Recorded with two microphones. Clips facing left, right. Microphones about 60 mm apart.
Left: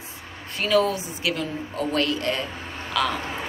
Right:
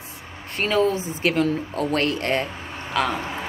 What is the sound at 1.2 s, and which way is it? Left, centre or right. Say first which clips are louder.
Speech: right 7 dB; right.